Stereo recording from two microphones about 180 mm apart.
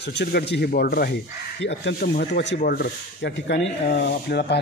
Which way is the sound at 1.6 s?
70° left (ahead or behind).